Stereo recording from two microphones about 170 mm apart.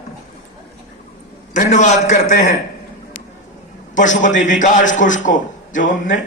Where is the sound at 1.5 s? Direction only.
45° left (ahead or behind).